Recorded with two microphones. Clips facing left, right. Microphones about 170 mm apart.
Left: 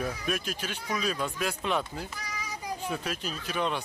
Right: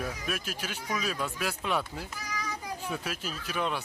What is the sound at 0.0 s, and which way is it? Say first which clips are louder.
Speech: left 3 dB; 5° right (ahead or behind).